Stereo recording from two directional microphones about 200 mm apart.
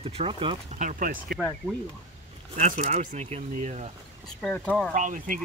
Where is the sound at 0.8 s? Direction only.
45° right (ahead or behind).